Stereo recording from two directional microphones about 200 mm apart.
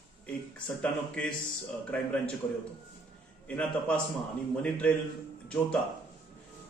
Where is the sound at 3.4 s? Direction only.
5° left (ahead or behind).